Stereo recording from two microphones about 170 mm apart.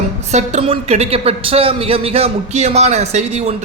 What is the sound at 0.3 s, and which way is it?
A man's voice, 40° right (ahead or behind).